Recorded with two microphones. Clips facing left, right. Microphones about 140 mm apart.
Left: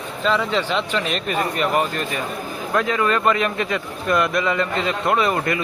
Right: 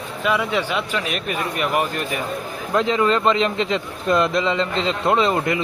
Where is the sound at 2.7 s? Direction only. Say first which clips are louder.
Right 2 dB; 25° right (ahead or behind).